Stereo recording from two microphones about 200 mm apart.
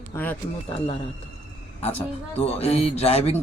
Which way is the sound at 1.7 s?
30° left (ahead or behind).